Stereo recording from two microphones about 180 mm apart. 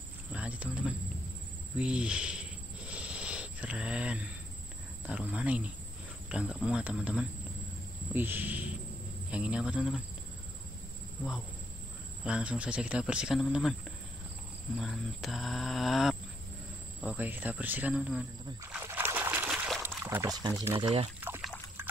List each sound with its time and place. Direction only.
0.3 s speech: 5° right (ahead or behind)
2.9 s a sound: 5° right (ahead or behind)
5.0 s speech: 5° right (ahead or behind)
12.3 s speech: 5° right (ahead or behind)
14.8 s speech: centre (ahead or behind)
18.7 s trickle: 10° right (ahead or behind)
20.0 s speech: 15° right (ahead or behind); by 21.1 s 30° right (ahead or behind)
21.2 s trickle: 5° right (ahead or behind)